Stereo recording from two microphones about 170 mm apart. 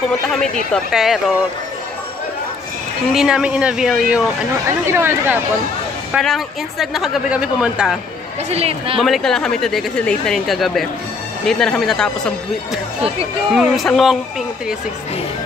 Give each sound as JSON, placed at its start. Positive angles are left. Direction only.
{"t": 0.7, "sound": "speech", "side_deg": 0}
{"t": 3.1, "sound": "speech", "side_deg": 0}
{"t": 4.6, "sound": "speech", "side_deg": -15}
{"t": 6.1, "sound": "speech", "side_deg": 0}
{"t": 8.5, "sound": "speech", "side_deg": -35}
{"t": 9.0, "sound": "speech", "side_deg": 0}
{"t": 13.6, "sound": "speech", "side_deg": 0}